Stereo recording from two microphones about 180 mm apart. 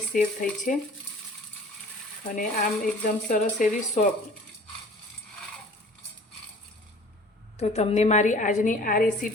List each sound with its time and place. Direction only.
0.1 s a woman's voice: 50° left (ahead or behind)
2.3 s a woman's voice: 45° left (ahead or behind)
7.6 s a woman's voice: 35° left (ahead or behind)